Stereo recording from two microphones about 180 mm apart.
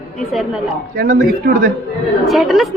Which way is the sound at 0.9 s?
55° right (ahead or behind).